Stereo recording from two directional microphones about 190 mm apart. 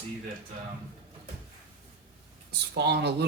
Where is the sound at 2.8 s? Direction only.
60° right (ahead or behind).